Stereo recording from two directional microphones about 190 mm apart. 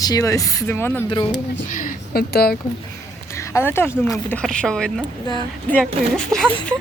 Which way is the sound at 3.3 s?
15° left (ahead or behind).